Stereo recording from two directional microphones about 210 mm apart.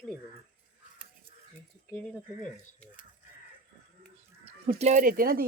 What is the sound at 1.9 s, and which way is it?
Speech, 10° left (ahead or behind).